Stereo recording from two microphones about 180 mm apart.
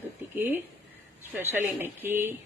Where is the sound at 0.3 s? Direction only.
10° right (ahead or behind).